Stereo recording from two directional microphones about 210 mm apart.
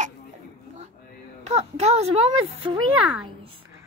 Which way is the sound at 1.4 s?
30° right (ahead or behind).